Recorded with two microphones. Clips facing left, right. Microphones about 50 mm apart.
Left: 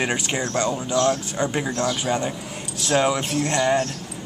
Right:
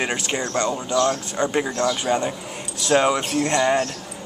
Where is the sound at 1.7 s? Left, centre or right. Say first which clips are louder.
Right 2 dB; right.